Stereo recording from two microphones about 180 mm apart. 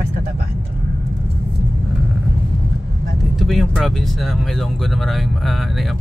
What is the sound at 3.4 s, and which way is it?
Speech, centre (ahead or behind).